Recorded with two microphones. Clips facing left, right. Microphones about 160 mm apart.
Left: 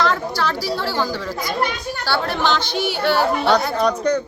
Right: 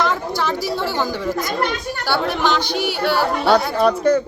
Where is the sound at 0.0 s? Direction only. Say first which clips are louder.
Even; 20° right (ahead or behind).